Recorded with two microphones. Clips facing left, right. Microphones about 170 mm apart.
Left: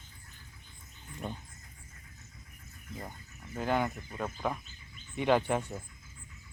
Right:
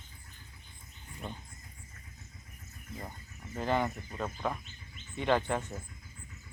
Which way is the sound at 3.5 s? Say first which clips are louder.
Even; centre (ahead or behind).